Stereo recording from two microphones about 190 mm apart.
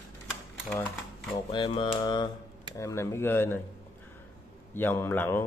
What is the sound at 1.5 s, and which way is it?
Mantra, 25° left (ahead or behind).